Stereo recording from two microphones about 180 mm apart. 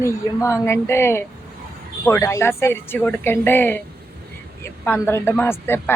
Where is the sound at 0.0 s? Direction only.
15° left (ahead or behind).